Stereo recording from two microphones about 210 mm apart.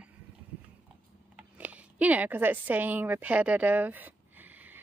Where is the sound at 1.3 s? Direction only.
5° right (ahead or behind).